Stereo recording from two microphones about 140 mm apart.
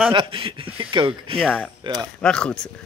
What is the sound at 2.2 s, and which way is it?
Speech, 5° left (ahead or behind).